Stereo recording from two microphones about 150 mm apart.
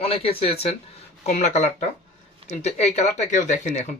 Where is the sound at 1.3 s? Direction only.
55° left (ahead or behind).